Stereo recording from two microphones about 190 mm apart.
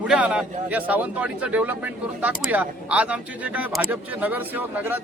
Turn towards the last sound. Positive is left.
turn(degrees=-10)  # may be behind; listen again after turning